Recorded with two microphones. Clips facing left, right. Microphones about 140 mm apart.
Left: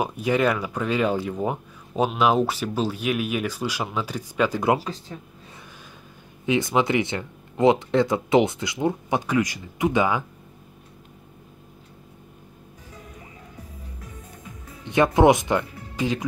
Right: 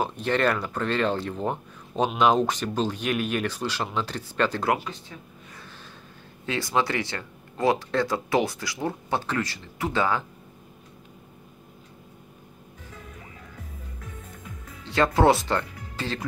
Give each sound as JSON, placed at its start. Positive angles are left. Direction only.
{"t": 0.0, "sound": "speech", "side_deg": 10}
{"t": 6.4, "sound": "speech", "side_deg": 15}
{"t": 14.9, "sound": "speech", "side_deg": 20}